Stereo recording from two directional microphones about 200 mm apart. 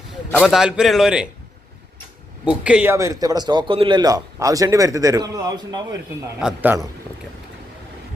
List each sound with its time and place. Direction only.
0.3 s a man's voice: centre (ahead or behind)
2.4 s a man's voice: 5° right (ahead or behind)